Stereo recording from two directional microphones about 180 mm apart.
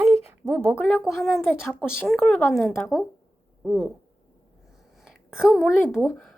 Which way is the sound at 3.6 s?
Centre (ahead or behind).